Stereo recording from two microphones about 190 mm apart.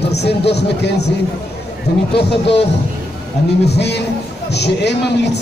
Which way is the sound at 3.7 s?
60° left (ahead or behind).